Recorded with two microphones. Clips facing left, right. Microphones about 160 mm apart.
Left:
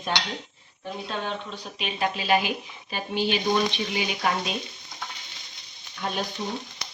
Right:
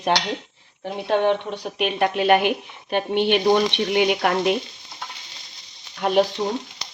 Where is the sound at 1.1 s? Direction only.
70° right (ahead or behind).